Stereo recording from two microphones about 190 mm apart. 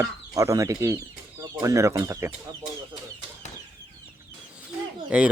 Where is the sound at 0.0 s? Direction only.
15° right (ahead or behind).